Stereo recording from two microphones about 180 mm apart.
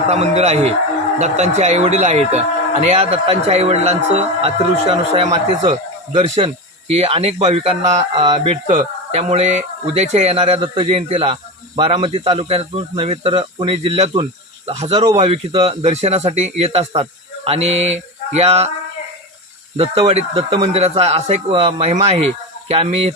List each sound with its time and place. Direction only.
0.1 s speech: 35° right (ahead or behind)
19.7 s speech: 35° right (ahead or behind)